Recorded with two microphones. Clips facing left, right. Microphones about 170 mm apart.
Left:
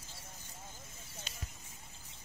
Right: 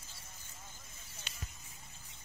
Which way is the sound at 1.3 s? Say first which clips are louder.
Left 2 dB; 40° left (ahead or behind).